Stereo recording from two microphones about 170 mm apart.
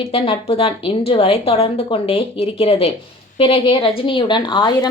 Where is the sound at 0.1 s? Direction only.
35° left (ahead or behind).